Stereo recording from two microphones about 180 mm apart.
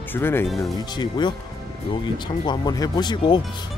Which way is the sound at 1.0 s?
25° left (ahead or behind).